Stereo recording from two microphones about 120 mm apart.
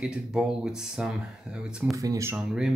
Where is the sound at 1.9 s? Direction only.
25° right (ahead or behind).